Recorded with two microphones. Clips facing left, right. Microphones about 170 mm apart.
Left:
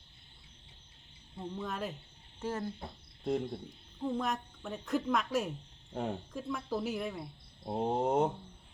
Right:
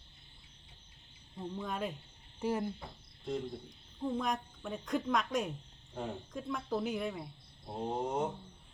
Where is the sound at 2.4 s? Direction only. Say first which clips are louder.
Right 3 dB; 15° right (ahead or behind).